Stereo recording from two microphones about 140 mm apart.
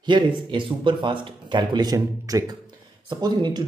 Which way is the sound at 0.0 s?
35° right (ahead or behind).